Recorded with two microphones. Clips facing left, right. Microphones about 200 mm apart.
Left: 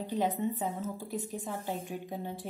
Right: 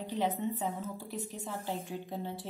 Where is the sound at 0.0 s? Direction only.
15° left (ahead or behind).